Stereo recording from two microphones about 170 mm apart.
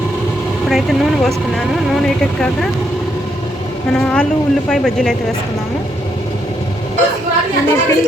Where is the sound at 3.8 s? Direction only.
5° left (ahead or behind).